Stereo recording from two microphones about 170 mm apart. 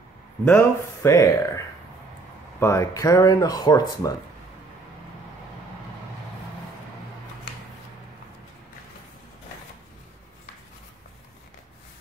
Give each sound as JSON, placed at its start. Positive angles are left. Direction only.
{"t": 0.5, "sound": "speech", "side_deg": 15}
{"t": 2.6, "sound": "speech", "side_deg": 15}